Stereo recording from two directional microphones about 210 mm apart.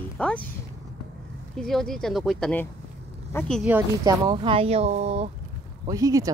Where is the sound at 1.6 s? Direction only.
Centre (ahead or behind).